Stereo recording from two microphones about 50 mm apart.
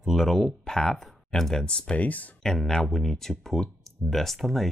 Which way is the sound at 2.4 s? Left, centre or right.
Centre.